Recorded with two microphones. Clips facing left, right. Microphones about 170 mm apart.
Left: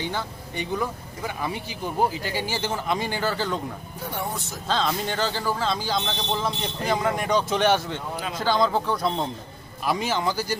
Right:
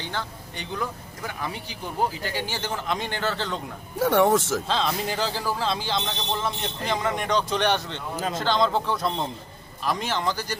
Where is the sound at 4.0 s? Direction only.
90° right.